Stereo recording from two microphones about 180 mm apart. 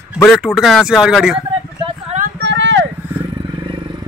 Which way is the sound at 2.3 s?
80° right.